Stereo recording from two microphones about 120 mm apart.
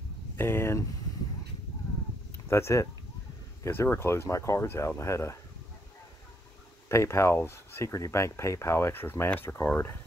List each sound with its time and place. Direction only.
0.4 s speech: 20° left (ahead or behind)
2.4 s speech: 20° left (ahead or behind)
6.9 s speech: 25° left (ahead or behind)